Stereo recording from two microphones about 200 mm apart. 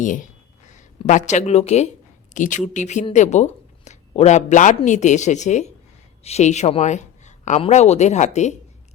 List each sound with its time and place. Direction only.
0.0 s speech: 40° left (ahead or behind)